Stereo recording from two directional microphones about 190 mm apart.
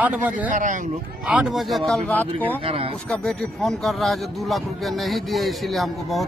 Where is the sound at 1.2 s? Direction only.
5° right (ahead or behind).